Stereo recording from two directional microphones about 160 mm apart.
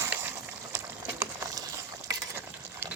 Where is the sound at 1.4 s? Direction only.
20° right (ahead or behind).